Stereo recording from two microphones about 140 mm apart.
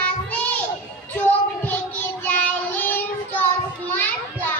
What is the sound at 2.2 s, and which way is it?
Child singing, 15° left (ahead or behind).